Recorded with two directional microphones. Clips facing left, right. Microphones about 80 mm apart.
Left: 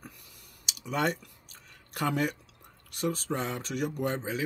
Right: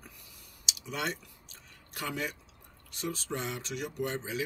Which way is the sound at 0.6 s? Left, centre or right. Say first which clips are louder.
Left 6 dB; left.